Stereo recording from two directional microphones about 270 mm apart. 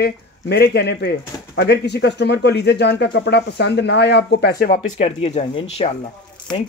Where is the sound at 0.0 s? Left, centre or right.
Left.